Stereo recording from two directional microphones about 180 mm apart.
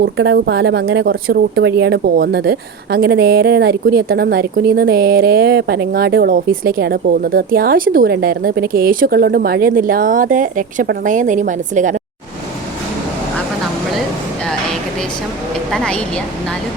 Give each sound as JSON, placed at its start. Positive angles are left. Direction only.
{"t": 0.0, "sound": "speech", "side_deg": -80}
{"t": 15.7, "sound": "a woman's voice", "side_deg": 5}